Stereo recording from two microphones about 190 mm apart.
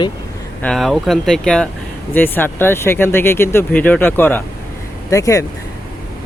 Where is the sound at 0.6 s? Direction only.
Centre (ahead or behind).